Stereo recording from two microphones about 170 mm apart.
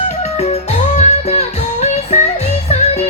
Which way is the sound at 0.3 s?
40° left (ahead or behind).